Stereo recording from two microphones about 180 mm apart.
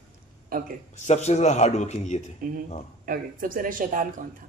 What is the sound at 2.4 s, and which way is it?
Speech, 50° right (ahead or behind).